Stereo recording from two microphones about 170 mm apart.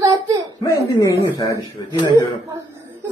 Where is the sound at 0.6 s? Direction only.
20° left (ahead or behind).